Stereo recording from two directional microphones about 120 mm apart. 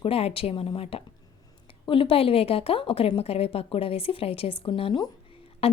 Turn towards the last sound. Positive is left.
turn(degrees=55)  # may be behind; listen again after turning